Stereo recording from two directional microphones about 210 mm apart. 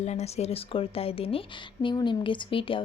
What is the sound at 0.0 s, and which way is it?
Speech, 30° left (ahead or behind).